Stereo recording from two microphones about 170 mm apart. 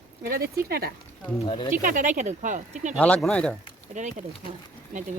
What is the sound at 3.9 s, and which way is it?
Speech, 45° right (ahead or behind).